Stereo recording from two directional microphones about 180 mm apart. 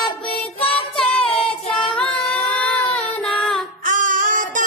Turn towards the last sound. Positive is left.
turn(degrees=-45)  # may be behind; listen again after turning